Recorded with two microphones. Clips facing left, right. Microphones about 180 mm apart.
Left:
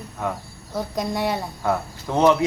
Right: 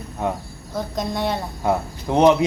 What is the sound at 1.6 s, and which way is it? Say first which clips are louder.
Speech: right 3 dB; 20° right (ahead or behind).